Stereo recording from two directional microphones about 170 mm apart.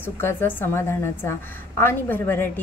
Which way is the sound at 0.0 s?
15° left (ahead or behind).